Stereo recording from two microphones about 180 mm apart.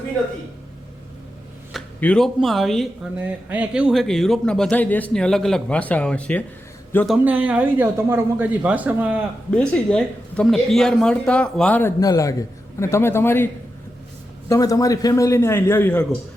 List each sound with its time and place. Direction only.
1.7 s speech: 5° left (ahead or behind)
3.2 s a man's voice: 10° right (ahead or behind); by 7.2 s 5° left (ahead or behind)
7.3 s speech: 10° right (ahead or behind)
9.6 s speech: 5° left (ahead or behind)
14.5 s speech: 20° left (ahead or behind)